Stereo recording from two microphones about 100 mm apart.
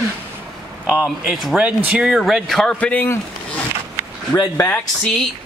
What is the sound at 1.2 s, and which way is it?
A man's voice, 5° right (ahead or behind).